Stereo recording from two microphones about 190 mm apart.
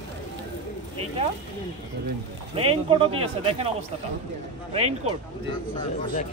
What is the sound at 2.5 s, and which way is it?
Speech, 30° right (ahead or behind).